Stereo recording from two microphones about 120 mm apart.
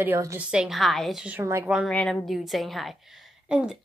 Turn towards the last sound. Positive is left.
turn(degrees=-5)  # may be behind; listen again after turning